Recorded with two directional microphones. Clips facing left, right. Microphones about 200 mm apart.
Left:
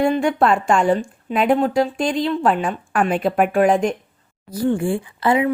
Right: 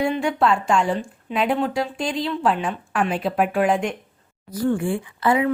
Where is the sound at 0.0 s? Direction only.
50° left (ahead or behind).